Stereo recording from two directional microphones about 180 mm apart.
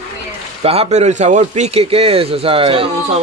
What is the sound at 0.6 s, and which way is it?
Speech, 35° right (ahead or behind).